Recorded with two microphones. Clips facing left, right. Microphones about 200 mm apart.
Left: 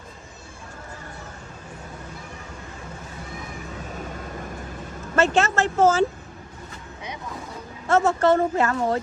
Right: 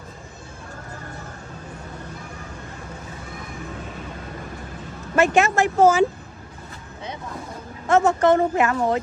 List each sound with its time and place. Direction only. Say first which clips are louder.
5.1 s a woman's voice: right 2 dB; 15° right (ahead or behind)
7.9 s a woman's voice: right 2 dB; 15° right (ahead or behind)